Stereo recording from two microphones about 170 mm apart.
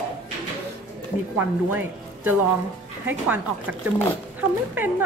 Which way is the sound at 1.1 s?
40° left (ahead or behind).